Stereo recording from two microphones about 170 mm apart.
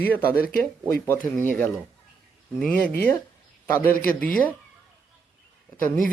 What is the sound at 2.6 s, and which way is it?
Speech, 10° left (ahead or behind).